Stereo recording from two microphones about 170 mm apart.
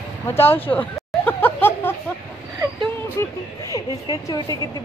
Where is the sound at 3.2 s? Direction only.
20° left (ahead or behind).